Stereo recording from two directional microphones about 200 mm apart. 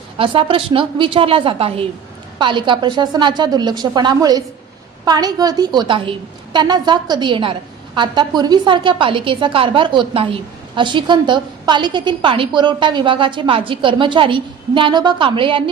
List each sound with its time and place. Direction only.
0.2 s a woman's voice: 25° right (ahead or behind)